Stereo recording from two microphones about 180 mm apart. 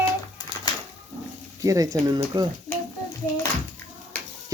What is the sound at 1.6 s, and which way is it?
Speech, 20° right (ahead or behind).